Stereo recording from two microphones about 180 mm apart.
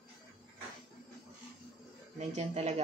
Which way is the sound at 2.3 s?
40° right (ahead or behind).